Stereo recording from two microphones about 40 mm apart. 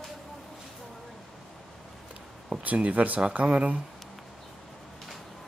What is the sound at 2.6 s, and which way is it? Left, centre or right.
Speech, right.